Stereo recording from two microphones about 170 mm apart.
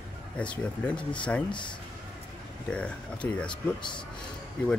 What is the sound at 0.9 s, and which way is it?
Speech, 30° left (ahead or behind).